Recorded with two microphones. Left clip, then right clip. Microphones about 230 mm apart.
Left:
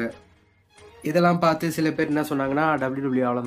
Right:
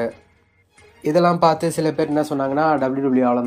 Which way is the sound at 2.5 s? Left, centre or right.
Left.